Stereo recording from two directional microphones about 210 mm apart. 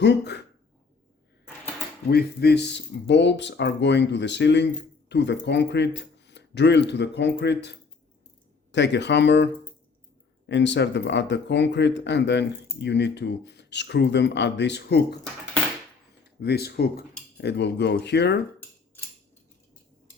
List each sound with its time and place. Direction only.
0.0 s speech: 55° left (ahead or behind)
2.0 s speech: 50° left (ahead or behind)
16.4 s speech: 50° left (ahead or behind)